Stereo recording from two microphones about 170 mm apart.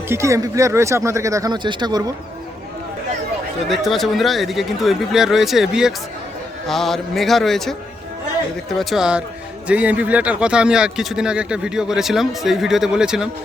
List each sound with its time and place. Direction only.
0.1 s speech: 15° right (ahead or behind)
3.7 s speech: centre (ahead or behind)